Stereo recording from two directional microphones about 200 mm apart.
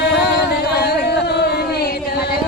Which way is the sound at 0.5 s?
55° left (ahead or behind).